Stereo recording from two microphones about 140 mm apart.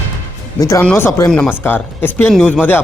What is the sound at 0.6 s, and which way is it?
Speech, 20° left (ahead or behind).